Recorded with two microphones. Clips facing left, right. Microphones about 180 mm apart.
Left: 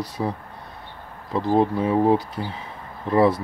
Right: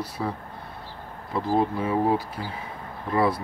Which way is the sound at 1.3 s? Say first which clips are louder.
Left 4 dB; 20° left (ahead or behind).